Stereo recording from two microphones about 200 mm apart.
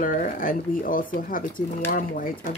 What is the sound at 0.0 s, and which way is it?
Speech, 40° left (ahead or behind).